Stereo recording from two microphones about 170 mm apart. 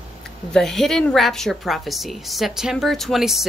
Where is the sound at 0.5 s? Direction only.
Centre (ahead or behind).